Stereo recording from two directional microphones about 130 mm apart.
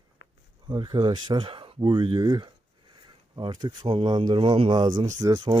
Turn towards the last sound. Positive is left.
turn(degrees=-25)  # may be behind; listen again after turning